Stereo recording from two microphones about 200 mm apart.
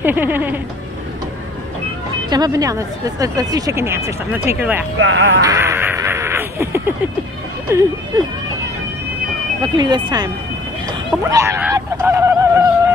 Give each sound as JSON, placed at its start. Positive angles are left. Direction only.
{"t": 0.0, "sound": "speech", "side_deg": -10}
{"t": 2.2, "sound": "speech", "side_deg": -20}
{"t": 4.9, "sound": "speech", "side_deg": -75}
{"t": 5.4, "sound": "crow", "side_deg": -15}
{"t": 7.7, "sound": "speech", "side_deg": -10}
{"t": 9.6, "sound": "speech", "side_deg": -20}
{"t": 11.2, "sound": "a sound", "side_deg": -15}